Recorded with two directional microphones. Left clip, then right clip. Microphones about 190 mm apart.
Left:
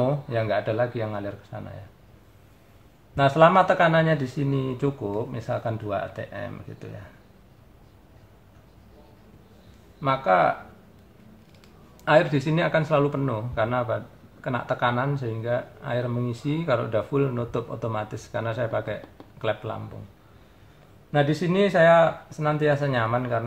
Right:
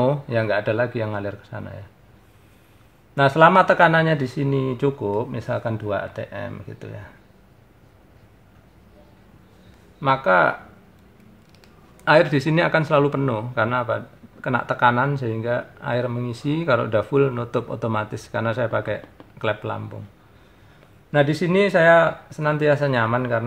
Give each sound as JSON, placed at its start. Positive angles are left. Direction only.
{"t": 0.0, "sound": "a man's voice", "side_deg": -45}
{"t": 3.2, "sound": "speech", "side_deg": -40}
{"t": 9.9, "sound": "a man's voice", "side_deg": -45}
{"t": 12.0, "sound": "a man's voice", "side_deg": -45}
{"t": 21.1, "sound": "a man's voice", "side_deg": -40}